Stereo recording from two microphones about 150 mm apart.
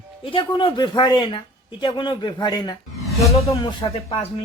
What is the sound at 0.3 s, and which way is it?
Speech, 35° left (ahead or behind).